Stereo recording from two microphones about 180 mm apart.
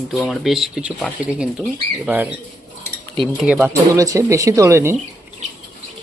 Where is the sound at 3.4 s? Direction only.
5° right (ahead or behind).